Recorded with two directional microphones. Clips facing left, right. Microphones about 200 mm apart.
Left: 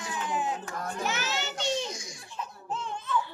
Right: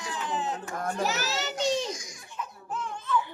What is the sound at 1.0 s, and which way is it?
Children playing, 40° right (ahead or behind).